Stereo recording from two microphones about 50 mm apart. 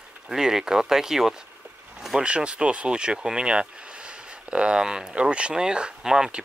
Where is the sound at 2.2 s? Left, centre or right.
Right.